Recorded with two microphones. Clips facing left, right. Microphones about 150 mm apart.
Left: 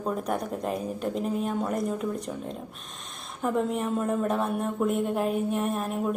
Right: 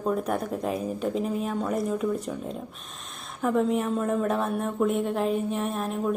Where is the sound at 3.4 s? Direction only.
Centre (ahead or behind).